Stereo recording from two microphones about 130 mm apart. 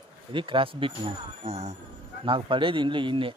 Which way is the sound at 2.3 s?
40° right (ahead or behind).